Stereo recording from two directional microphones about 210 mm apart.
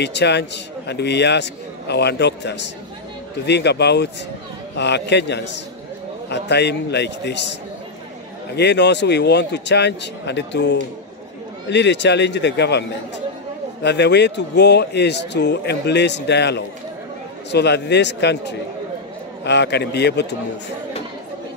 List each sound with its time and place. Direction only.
0.0 s a man's voice: 55° left (ahead or behind)
8.5 s a man's voice: 55° left (ahead or behind)
13.8 s a man's voice: 55° left (ahead or behind)
19.4 s a man's voice: 55° left (ahead or behind)